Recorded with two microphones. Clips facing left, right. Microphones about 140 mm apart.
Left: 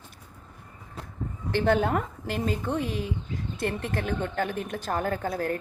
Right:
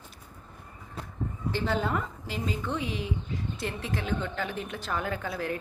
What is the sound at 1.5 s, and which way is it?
A woman's voice, 60° left (ahead or behind).